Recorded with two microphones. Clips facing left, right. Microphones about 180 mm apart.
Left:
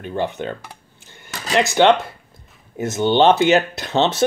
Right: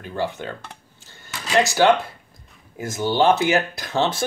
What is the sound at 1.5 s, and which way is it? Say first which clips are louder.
Speech: left 2 dB; 20° left (ahead or behind).